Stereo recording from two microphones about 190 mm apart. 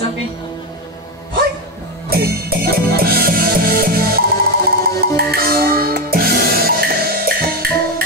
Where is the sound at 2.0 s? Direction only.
55° right (ahead or behind).